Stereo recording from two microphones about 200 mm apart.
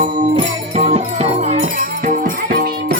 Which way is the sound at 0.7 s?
30° right (ahead or behind).